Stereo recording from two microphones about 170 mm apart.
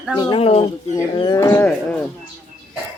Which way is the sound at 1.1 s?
25° left (ahead or behind).